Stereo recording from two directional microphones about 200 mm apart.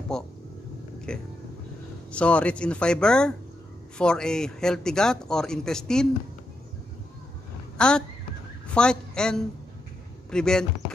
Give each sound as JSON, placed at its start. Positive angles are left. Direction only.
{"t": 0.1, "sound": "speech", "side_deg": 5}
{"t": 7.7, "sound": "a sound", "side_deg": 5}
{"t": 8.6, "sound": "a woman's voice", "side_deg": 5}